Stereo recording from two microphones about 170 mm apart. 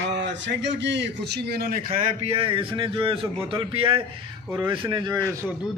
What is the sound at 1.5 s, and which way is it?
Speech, 65° right (ahead or behind).